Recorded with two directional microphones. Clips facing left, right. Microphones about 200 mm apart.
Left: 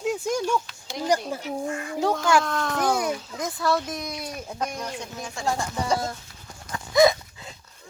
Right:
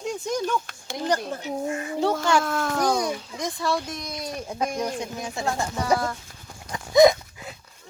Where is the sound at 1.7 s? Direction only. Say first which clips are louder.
Right 2 dB; 20° right (ahead or behind).